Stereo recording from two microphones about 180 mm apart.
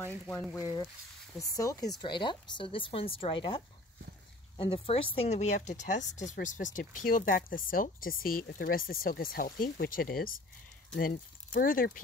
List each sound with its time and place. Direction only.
0.3 s speech: 10° left (ahead or behind); by 12.0 s 50° left (ahead or behind)